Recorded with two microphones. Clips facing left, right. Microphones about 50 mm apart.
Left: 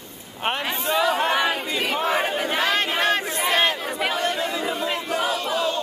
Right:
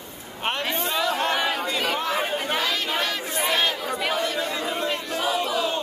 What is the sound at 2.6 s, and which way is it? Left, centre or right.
Speech, left.